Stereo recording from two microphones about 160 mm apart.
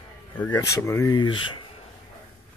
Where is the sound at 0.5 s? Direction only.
20° left (ahead or behind).